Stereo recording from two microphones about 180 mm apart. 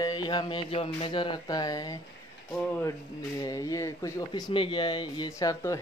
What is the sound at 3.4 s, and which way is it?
Speech, 20° left (ahead or behind).